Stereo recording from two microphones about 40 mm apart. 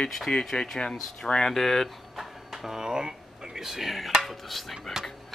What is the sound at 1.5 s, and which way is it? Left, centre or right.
Speech, centre.